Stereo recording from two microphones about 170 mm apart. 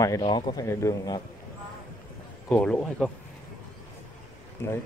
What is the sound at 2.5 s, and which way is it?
Speech, 5° left (ahead or behind).